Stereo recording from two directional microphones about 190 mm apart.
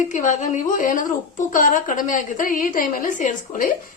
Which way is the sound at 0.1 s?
40° left (ahead or behind).